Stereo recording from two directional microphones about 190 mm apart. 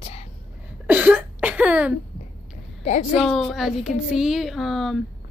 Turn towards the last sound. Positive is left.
turn(degrees=0)  # may be behind; listen again after turning